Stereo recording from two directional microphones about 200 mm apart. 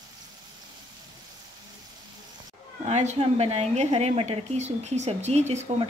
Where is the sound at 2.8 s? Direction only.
35° right (ahead or behind).